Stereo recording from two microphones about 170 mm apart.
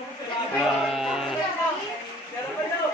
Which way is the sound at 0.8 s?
Centre (ahead or behind).